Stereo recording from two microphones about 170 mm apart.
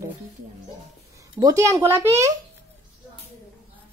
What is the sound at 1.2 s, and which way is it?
Speech, 20° right (ahead or behind).